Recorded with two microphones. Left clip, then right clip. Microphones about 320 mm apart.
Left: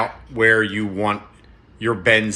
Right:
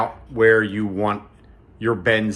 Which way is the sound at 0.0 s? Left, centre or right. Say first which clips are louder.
Even; centre.